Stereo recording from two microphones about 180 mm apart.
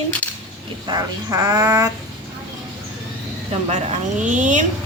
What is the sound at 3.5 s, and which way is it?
Speech, 35° right (ahead or behind).